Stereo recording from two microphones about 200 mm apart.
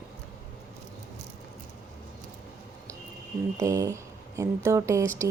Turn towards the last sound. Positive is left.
turn(degrees=-15)  # may be behind; listen again after turning